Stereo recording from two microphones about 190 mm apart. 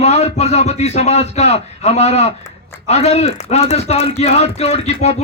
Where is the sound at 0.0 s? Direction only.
35° left (ahead or behind).